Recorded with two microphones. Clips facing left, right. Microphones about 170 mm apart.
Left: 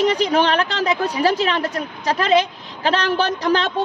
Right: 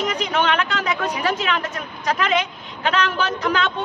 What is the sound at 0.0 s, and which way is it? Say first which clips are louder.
A woman's voice: left 5 dB; 35° left (ahead or behind).